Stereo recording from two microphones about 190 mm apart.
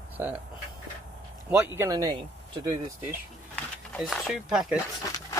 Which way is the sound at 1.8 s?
20° right (ahead or behind).